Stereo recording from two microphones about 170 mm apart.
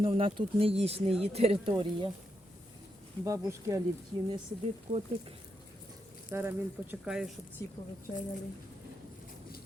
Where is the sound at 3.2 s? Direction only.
20° right (ahead or behind).